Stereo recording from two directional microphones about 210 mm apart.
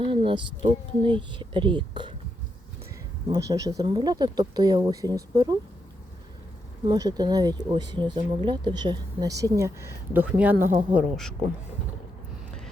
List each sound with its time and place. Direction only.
0.0 s speech: 25° right (ahead or behind)
3.3 s speech: 15° right (ahead or behind)
6.8 s speech: 20° right (ahead or behind); by 11.3 s centre (ahead or behind)